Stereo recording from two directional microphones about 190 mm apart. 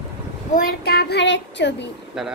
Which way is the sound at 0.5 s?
55° left (ahead or behind).